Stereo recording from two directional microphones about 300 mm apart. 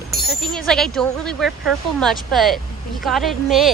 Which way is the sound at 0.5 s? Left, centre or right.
Centre.